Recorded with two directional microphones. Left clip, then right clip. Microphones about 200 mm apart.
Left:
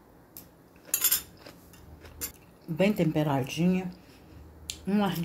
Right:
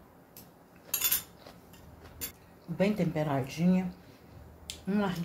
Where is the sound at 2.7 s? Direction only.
40° left (ahead or behind).